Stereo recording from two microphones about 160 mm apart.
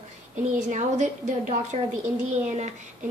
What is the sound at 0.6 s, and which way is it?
A woman's voice, 45° right (ahead or behind).